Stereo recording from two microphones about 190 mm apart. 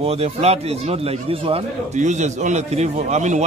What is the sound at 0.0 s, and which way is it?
A man's voice, 35° right (ahead or behind).